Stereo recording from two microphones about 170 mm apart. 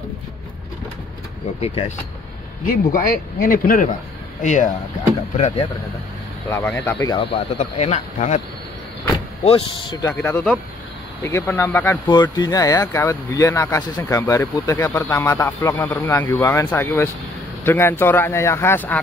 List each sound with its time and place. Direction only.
2.6 s speech: 55° left (ahead or behind)
6.5 s speech: 15° left (ahead or behind)
7.5 s speech: 40° left (ahead or behind)
9.4 s speech: 35° left (ahead or behind)
10.1 s speech: 5° left (ahead or behind)
12.1 s speech: 25° left (ahead or behind)